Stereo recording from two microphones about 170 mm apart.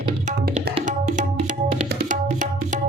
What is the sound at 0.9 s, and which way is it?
Tabla, 50° right (ahead or behind).